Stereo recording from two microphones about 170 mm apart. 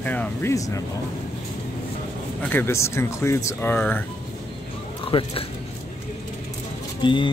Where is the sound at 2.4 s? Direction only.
10° left (ahead or behind).